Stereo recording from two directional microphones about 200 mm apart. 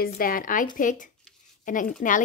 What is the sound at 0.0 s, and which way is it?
A woman's voice, 45° left (ahead or behind).